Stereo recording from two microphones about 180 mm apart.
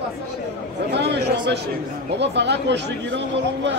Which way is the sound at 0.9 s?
70° right (ahead or behind).